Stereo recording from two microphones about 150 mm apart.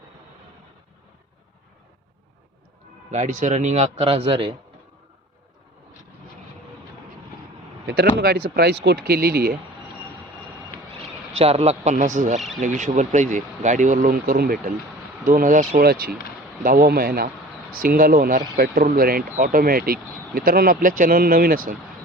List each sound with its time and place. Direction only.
3.1 s a man's voice: 55° right (ahead or behind); by 4.5 s 35° right (ahead or behind)
7.9 s speech: 90° right
10.9 s a man's voice: 40° right (ahead or behind); by 14.7 s 85° right
15.3 s speech: 65° right (ahead or behind)
15.8 s speech: 90° right; by 21.8 s 70° right (ahead or behind)